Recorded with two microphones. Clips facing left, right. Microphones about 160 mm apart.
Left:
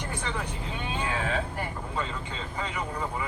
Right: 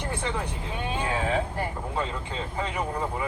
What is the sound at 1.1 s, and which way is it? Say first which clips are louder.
Vehicle: right 4 dB; 25° right (ahead or behind).